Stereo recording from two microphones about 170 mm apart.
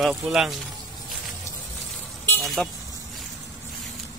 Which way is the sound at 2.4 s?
Centre (ahead or behind).